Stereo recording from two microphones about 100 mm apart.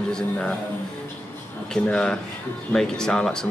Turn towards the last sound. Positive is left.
turn(degrees=5)  # may be behind; listen again after turning